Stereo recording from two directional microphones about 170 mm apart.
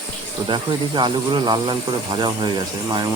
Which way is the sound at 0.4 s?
25° right (ahead or behind).